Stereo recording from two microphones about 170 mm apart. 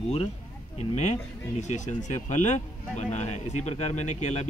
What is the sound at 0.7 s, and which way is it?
Speech, 40° left (ahead or behind).